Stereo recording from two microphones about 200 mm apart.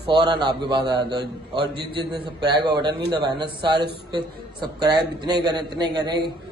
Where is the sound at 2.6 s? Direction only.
20° right (ahead or behind).